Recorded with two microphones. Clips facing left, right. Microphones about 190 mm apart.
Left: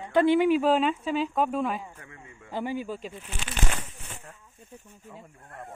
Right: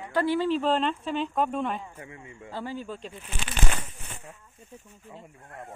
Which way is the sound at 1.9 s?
20° right (ahead or behind).